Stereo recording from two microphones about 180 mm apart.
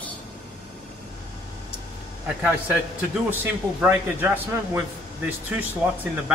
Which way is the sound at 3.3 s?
10° right (ahead or behind).